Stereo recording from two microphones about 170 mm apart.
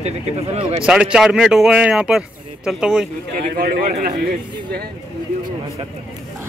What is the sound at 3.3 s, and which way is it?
Speech, 55° right (ahead or behind).